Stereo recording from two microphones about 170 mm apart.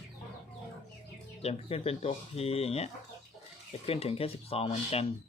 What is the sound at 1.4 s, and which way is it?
Speech, 35° left (ahead or behind).